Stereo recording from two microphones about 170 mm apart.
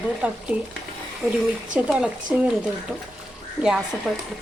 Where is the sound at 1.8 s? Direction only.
5° right (ahead or behind).